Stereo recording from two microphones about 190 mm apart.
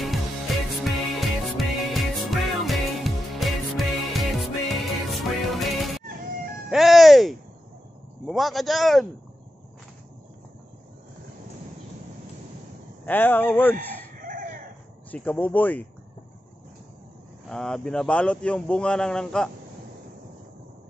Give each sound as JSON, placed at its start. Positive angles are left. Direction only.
{"t": 0.7, "sound": "music", "side_deg": 0}
{"t": 8.3, "sound": "speech", "side_deg": 0}
{"t": 13.0, "sound": "speech", "side_deg": 10}
{"t": 14.1, "sound": "chicken", "side_deg": -45}
{"t": 15.0, "sound": "speech", "side_deg": 10}
{"t": 17.5, "sound": "speech", "side_deg": 5}